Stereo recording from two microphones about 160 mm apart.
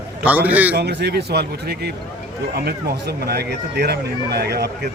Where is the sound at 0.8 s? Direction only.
90° right.